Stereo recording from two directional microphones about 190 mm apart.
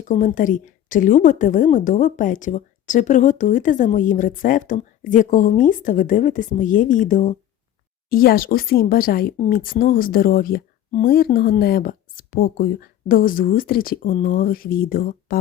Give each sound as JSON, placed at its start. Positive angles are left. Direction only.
{"t": 0.0, "sound": "a woman's voice", "side_deg": 40}